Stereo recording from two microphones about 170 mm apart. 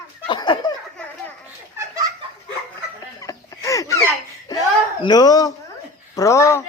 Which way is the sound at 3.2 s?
20° left (ahead or behind).